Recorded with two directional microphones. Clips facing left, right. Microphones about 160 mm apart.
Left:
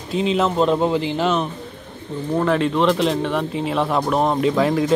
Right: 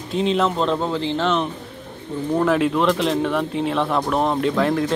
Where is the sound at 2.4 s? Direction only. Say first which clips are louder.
Even; 5° right (ahead or behind).